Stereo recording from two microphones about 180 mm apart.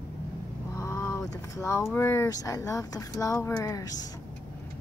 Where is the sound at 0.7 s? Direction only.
15° left (ahead or behind).